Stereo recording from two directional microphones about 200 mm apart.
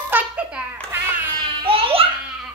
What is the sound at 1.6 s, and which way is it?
Music, 30° right (ahead or behind).